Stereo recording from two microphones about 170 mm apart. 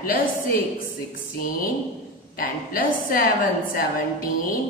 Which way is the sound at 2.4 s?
55° left (ahead or behind).